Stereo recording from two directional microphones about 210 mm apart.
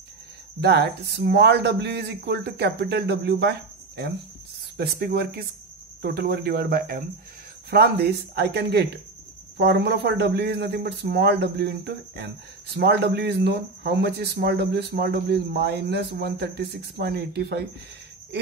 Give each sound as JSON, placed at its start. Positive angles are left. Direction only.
{"t": 0.6, "sound": "speech", "side_deg": -50}